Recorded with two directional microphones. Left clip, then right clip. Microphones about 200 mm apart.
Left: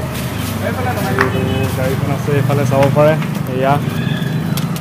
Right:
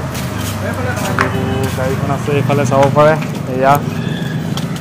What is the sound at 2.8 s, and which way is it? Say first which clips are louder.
Speech: right 2 dB; 15° right (ahead or behind).